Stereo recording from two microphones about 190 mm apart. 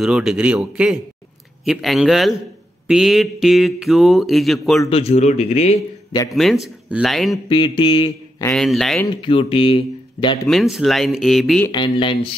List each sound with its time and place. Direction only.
0.0 s speech: 5° right (ahead or behind)
4.8 s speech: 30° left (ahead or behind)
6.3 s speech: centre (ahead or behind)
7.4 s a sound: 25° left (ahead or behind)
8.5 s speech: centre (ahead or behind)
9.2 s speech: 30° left (ahead or behind)
10.5 s speech: centre (ahead or behind)
11.6 s a sound: 25° left (ahead or behind)